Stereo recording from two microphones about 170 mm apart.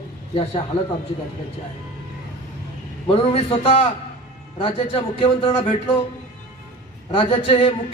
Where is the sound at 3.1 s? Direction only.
35° left (ahead or behind).